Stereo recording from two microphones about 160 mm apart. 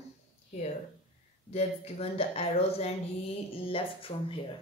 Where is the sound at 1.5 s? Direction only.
40° left (ahead or behind).